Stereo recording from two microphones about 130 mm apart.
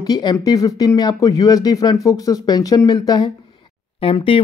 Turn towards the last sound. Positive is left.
turn(degrees=45)  # may be behind; listen again after turning